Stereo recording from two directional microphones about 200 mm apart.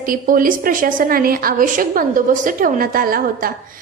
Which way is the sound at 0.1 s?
45° right (ahead or behind).